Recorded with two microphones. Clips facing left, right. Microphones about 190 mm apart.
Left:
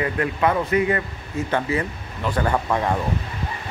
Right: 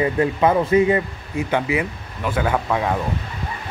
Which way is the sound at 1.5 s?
10° right (ahead or behind).